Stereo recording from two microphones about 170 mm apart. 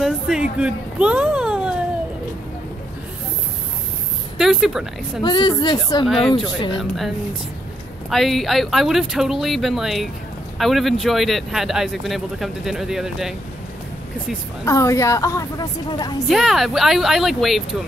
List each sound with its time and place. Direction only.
0.0 s speech: 5° right (ahead or behind)
4.4 s speech: centre (ahead or behind)
5.2 s a woman's voice: 25° left (ahead or behind)
6.0 s speech: centre (ahead or behind)
6.3 s a woman's voice: 30° left (ahead or behind)
8.1 s speech: centre (ahead or behind)
14.6 s a woman's voice: 20° left (ahead or behind)
16.3 s speech: centre (ahead or behind)